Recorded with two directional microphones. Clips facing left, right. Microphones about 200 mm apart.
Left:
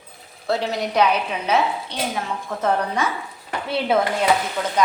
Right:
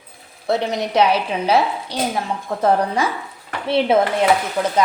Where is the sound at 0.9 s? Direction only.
30° right (ahead or behind).